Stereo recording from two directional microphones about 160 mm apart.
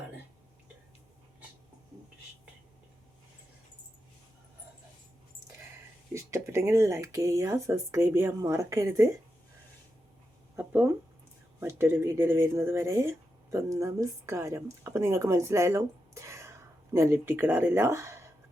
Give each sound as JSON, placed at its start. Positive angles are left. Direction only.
{"t": 6.1, "sound": "speech", "side_deg": -15}
{"t": 10.6, "sound": "speech", "side_deg": -10}